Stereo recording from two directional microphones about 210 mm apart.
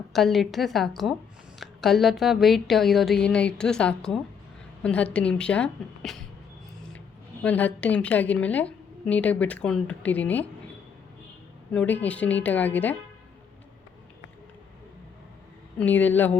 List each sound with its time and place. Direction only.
0.1 s a woman's voice: centre (ahead or behind)
7.4 s a woman's voice: 5° left (ahead or behind)
11.7 s a woman's voice: 5° left (ahead or behind)
15.8 s a woman's voice: 10° left (ahead or behind)